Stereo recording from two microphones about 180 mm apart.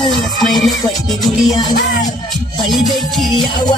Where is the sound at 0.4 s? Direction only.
Centre (ahead or behind).